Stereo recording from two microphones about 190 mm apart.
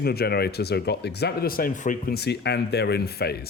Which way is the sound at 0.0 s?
55° left (ahead or behind).